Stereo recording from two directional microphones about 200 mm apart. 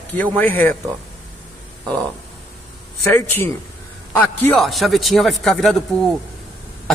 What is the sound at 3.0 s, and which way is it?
A man's voice, 10° left (ahead or behind).